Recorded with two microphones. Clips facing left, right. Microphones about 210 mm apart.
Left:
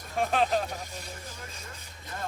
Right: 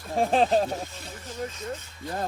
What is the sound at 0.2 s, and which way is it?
Speech, 30° right (ahead or behind).